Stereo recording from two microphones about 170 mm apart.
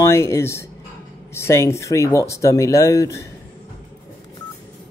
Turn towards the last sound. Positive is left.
turn(degrees=20)  # may be behind; listen again after turning